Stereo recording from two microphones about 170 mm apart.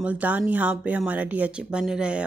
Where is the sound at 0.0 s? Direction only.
10° right (ahead or behind).